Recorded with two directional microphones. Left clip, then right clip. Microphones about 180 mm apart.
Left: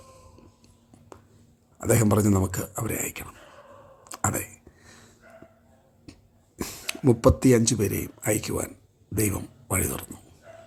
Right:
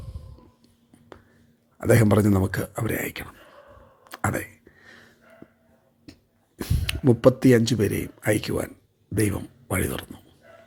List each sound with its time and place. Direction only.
1.8 s speech: 10° right (ahead or behind)
4.0 s a sound: 10° right (ahead or behind)
6.6 s speech: centre (ahead or behind)